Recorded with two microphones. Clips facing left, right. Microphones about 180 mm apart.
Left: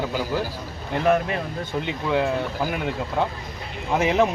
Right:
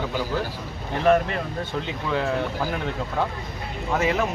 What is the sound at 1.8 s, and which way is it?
Speech, 15° left (ahead or behind).